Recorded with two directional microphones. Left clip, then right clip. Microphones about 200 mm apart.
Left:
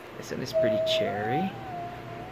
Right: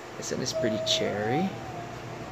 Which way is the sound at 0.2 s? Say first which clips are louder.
Left 3 dB; centre (ahead or behind).